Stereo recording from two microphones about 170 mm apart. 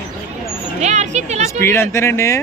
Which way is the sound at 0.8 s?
40° right (ahead or behind).